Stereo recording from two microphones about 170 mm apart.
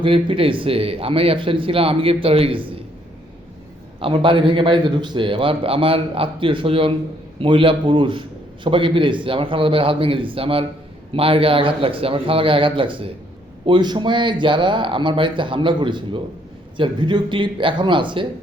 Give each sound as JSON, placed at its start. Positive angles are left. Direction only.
{"t": 0.0, "sound": "a man's voice", "side_deg": -30}
{"t": 4.0, "sound": "a man's voice", "side_deg": -30}